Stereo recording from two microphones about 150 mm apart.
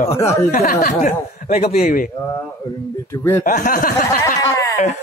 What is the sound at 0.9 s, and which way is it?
Speech, 50° left (ahead or behind).